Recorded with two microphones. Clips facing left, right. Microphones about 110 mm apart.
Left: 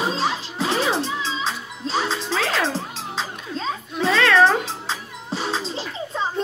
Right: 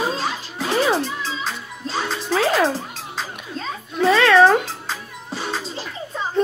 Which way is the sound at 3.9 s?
Centre (ahead or behind).